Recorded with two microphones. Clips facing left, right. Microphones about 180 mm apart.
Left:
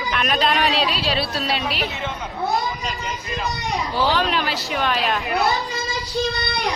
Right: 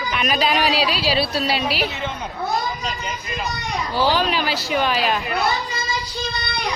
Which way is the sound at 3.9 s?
Centre (ahead or behind).